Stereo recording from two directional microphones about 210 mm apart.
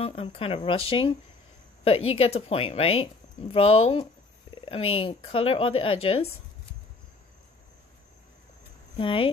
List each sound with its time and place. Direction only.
0.0 s speech: 25° left (ahead or behind)
8.9 s speech: 25° left (ahead or behind)